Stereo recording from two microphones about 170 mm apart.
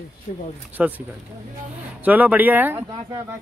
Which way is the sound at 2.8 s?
30° right (ahead or behind).